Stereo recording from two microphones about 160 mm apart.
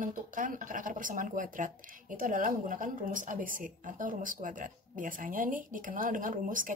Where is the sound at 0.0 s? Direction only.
55° right (ahead or behind).